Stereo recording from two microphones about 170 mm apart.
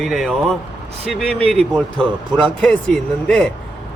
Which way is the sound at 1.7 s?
5° left (ahead or behind).